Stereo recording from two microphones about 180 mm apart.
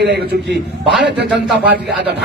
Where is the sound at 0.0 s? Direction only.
70° right (ahead or behind).